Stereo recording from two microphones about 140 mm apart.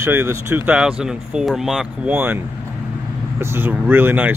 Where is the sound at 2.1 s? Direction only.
15° right (ahead or behind).